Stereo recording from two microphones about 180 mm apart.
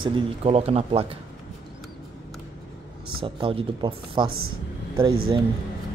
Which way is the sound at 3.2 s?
30° right (ahead or behind).